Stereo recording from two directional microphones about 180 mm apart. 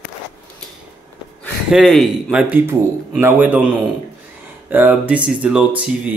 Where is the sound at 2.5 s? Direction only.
10° right (ahead or behind).